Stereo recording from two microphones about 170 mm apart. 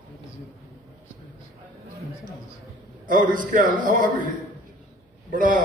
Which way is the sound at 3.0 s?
50° right (ahead or behind).